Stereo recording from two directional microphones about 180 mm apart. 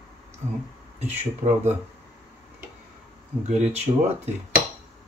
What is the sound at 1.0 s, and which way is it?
Speech, 40° right (ahead or behind).